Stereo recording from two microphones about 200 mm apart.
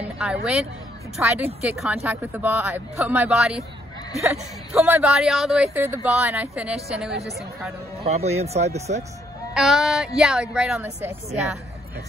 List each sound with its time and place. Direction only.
0.0 s speech: 5° right (ahead or behind)
4.7 s speech: centre (ahead or behind)
8.0 s speech: 30° right (ahead or behind)
9.5 s speech: centre (ahead or behind)